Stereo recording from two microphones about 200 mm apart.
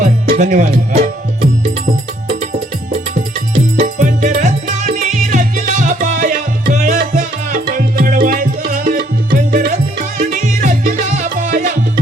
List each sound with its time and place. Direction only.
0.0 s music: 40° right (ahead or behind)
3.2 s music: 40° right (ahead or behind)